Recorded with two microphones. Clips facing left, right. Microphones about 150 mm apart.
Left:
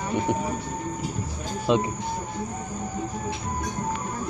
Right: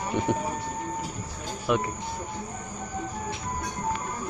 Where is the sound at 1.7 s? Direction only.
20° left (ahead or behind).